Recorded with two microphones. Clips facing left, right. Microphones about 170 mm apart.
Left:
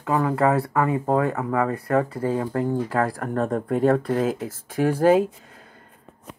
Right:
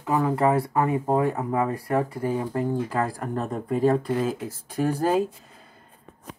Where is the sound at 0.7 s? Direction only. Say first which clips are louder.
Left 1 dB; 80° left.